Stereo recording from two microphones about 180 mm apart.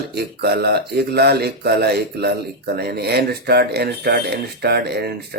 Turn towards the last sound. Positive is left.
turn(degrees=-65)  # may be behind; listen again after turning